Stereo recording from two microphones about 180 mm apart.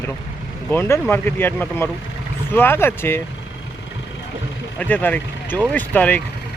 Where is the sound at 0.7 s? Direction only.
10° left (ahead or behind).